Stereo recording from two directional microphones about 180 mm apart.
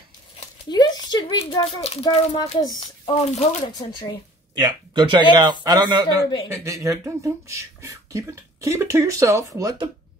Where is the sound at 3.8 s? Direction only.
25° left (ahead or behind).